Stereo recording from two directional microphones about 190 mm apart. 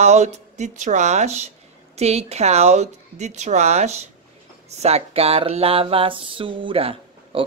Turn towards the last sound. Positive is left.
turn(degrees=-30)  # may be behind; listen again after turning